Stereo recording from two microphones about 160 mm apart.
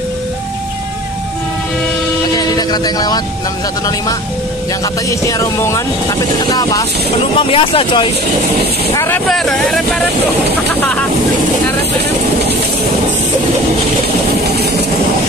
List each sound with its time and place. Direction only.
2.3 s music: 25° left (ahead or behind)
5.4 s speech: 20° left (ahead or behind)
7.3 s speech: 35° left (ahead or behind)
8.9 s speech: 15° left (ahead or behind)
9.3 s speech: centre (ahead or behind)